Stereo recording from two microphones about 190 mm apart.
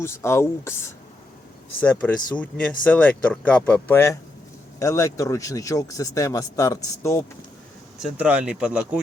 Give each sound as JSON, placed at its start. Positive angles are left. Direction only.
{"t": 0.0, "sound": "speech", "side_deg": 15}
{"t": 1.8, "sound": "speech", "side_deg": 5}
{"t": 8.0, "sound": "speech", "side_deg": -5}